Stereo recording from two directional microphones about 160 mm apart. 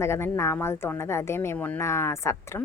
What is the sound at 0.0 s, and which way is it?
Speech, 15° left (ahead or behind).